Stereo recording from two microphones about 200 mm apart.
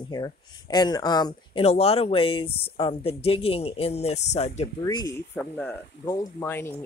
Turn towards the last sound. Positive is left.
turn(degrees=10)  # may be behind; listen again after turning